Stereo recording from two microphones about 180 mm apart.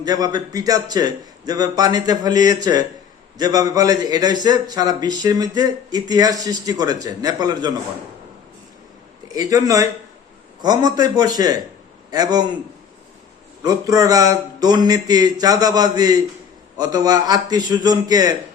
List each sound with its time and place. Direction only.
0.0 s a man's voice: 20° right (ahead or behind)
9.3 s a man's voice: 20° right (ahead or behind)
13.6 s a man's voice: 20° right (ahead or behind)